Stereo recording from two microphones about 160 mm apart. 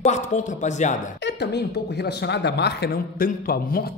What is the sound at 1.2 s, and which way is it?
Speech, 90° left.